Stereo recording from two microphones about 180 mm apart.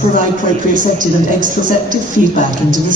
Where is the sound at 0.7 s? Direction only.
45° right (ahead or behind).